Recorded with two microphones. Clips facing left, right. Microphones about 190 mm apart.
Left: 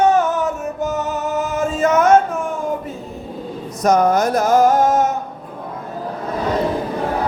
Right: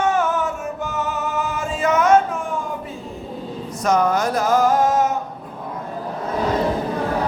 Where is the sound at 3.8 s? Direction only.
40° left (ahead or behind).